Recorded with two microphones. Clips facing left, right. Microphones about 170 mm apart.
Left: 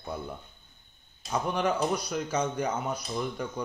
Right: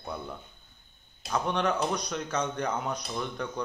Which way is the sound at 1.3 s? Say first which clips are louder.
Even; 5° left (ahead or behind).